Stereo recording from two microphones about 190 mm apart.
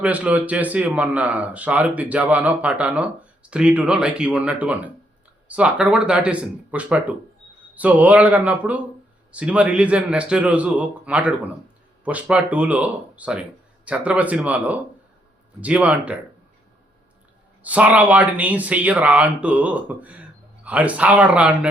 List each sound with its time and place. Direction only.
0.0 s speech: 5° right (ahead or behind)
17.6 s speech: 5° right (ahead or behind)